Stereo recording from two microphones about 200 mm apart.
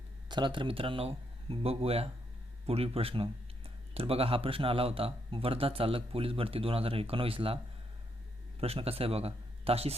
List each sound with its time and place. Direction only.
0.3 s speech: 20° right (ahead or behind)
8.6 s speech: 30° right (ahead or behind)